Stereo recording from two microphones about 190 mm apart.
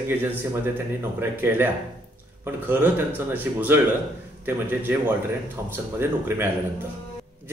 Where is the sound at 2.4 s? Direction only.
10° right (ahead or behind).